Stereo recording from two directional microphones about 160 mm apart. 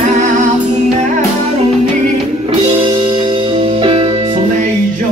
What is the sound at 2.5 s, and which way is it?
Music, 30° right (ahead or behind).